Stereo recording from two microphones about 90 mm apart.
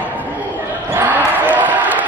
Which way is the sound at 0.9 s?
20° right (ahead or behind).